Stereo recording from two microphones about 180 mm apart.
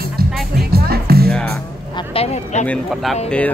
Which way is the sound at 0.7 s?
60° right (ahead or behind).